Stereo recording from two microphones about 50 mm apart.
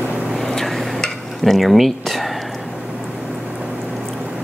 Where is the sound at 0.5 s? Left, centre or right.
Centre.